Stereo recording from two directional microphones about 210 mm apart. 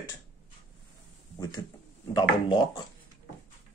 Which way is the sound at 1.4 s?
20° left (ahead or behind).